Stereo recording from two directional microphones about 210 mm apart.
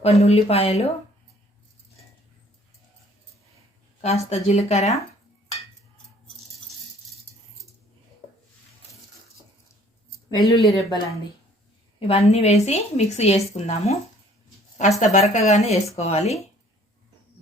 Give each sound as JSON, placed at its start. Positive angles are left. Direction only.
{"t": 0.0, "sound": "speech", "side_deg": 30}
{"t": 4.0, "sound": "a woman's voice", "side_deg": 30}
{"t": 10.5, "sound": "speech", "side_deg": 0}
{"t": 11.9, "sound": "a woman's voice", "side_deg": 30}